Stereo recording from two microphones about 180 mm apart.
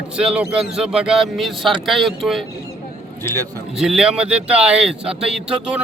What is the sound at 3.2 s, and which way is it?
Speech, 10° left (ahead or behind).